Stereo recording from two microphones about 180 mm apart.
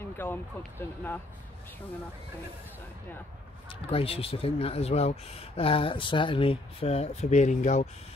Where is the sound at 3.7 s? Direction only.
30° left (ahead or behind).